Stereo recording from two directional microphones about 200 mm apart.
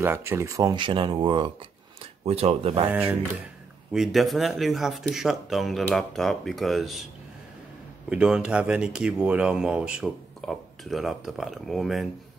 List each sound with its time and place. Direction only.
0.0 s speech: 10° right (ahead or behind); by 2.9 s 25° right (ahead or behind)
2.9 s speech: 10° right (ahead or behind)
8.1 s speech: 5° right (ahead or behind)